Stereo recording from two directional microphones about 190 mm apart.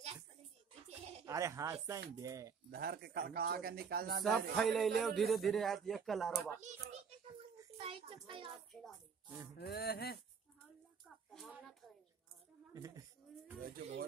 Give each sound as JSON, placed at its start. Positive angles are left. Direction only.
{"t": 0.0, "sound": "a sound", "side_deg": -35}
{"t": 1.2, "sound": "speech", "side_deg": -15}
{"t": 2.7, "sound": "a man's voice", "side_deg": -55}
{"t": 4.6, "sound": "a man's voice", "side_deg": 0}
{"t": 7.7, "sound": "a child's voice", "side_deg": -30}
{"t": 9.6, "sound": "a sound", "side_deg": 55}
{"t": 11.3, "sound": "a sound", "side_deg": 0}
{"t": 12.7, "sound": "a woman's voice", "side_deg": -20}
{"t": 13.6, "sound": "speech", "side_deg": -50}